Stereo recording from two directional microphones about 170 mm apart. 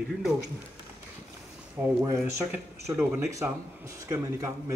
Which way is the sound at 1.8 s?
15° right (ahead or behind).